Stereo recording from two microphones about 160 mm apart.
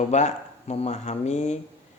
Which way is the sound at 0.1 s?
45° left (ahead or behind).